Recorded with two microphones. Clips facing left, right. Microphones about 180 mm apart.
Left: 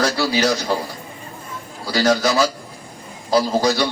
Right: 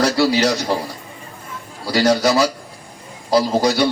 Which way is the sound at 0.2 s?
25° right (ahead or behind).